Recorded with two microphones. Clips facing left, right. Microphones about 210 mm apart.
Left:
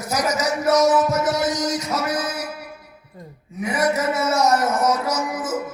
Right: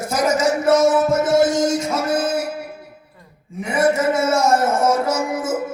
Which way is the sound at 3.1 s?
40° left (ahead or behind).